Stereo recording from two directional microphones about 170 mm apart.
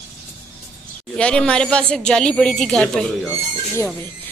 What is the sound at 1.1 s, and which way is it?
Speech, 5° left (ahead or behind).